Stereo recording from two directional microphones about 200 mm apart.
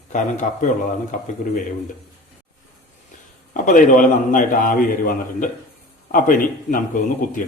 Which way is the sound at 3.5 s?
40° left (ahead or behind).